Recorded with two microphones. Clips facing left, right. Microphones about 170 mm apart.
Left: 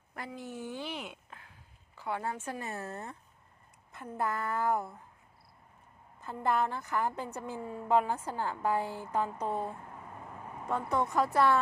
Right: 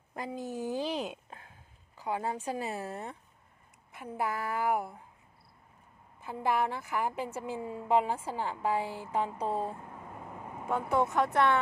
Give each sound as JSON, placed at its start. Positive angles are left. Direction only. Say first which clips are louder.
{"t": 0.1, "sound": "speech", "louder": "right 4 dB", "side_deg": -25}
{"t": 0.3, "sound": "speech", "louder": "right 6 dB", "side_deg": -40}
{"t": 2.0, "sound": "a woman's voice", "louder": "right 2 dB", "side_deg": -15}
{"t": 6.2, "sound": "a woman's voice", "louder": "even", "side_deg": -5}
{"t": 9.2, "sound": "speech", "louder": "right 1 dB", "side_deg": -30}
{"t": 10.7, "sound": "a woman's voice", "louder": "right 2 dB", "side_deg": -5}